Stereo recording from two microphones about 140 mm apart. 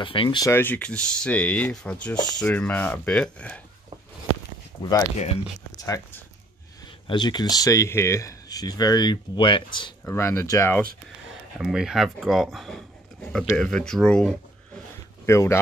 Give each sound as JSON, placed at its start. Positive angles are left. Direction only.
{"t": 0.0, "sound": "speech", "side_deg": 40}
{"t": 0.5, "sound": "rub", "side_deg": 15}
{"t": 5.8, "sound": "speech", "side_deg": 20}
{"t": 10.0, "sound": "speech", "side_deg": 20}
{"t": 11.5, "sound": "speech", "side_deg": -5}
{"t": 15.2, "sound": "speech", "side_deg": 20}